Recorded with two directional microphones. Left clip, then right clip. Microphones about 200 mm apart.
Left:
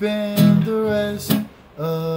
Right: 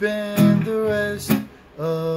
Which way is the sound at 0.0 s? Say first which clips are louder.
Even; 10° left (ahead or behind).